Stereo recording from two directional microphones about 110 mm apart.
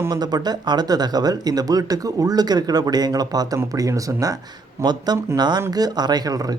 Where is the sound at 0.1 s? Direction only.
35° right (ahead or behind).